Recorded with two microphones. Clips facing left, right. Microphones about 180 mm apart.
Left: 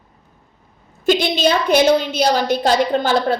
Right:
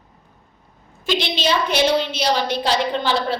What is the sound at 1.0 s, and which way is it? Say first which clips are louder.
A woman's voice: left 6 dB; 45° left (ahead or behind).